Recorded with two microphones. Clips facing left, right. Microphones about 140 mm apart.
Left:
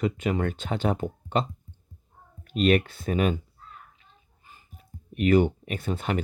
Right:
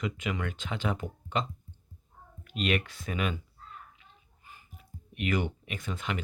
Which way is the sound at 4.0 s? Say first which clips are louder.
Even; 40° left (ahead or behind).